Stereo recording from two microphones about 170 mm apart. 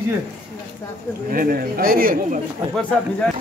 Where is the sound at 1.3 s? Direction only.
60° right (ahead or behind).